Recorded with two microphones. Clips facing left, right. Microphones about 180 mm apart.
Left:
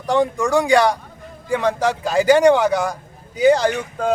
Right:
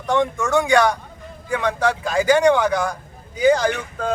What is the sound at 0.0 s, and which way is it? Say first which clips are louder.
Speech: left 2 dB; 35° left (ahead or behind).